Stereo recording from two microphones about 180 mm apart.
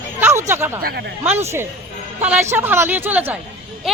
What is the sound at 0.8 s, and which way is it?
Speech, 60° right (ahead or behind).